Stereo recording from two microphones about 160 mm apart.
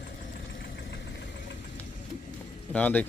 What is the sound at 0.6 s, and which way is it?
Vehicle, 90° left.